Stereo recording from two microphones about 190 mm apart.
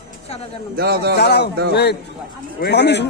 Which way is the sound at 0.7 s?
55° right (ahead or behind).